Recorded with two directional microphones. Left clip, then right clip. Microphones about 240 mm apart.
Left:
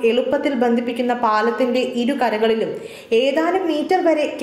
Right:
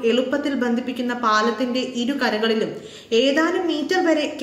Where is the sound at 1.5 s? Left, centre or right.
Right.